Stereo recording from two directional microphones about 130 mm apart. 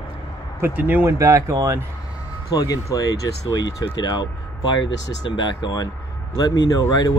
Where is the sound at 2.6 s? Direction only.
25° left (ahead or behind).